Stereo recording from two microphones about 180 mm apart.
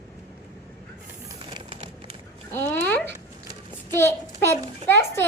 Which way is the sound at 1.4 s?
25° right (ahead or behind).